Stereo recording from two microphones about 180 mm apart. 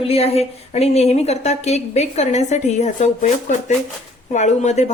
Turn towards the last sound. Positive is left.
turn(degrees=40)  # may be behind; listen again after turning